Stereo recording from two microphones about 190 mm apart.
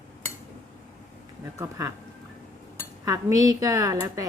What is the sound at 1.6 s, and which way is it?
Speech, 15° right (ahead or behind).